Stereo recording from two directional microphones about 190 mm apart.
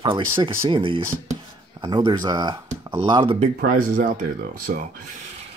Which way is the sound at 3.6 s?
45° right (ahead or behind).